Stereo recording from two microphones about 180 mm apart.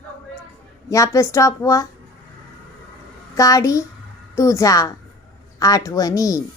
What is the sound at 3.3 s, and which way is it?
A woman's voice, 20° left (ahead or behind).